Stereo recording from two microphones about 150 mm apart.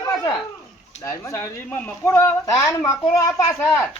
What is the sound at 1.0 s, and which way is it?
A man's voice, 20° left (ahead or behind).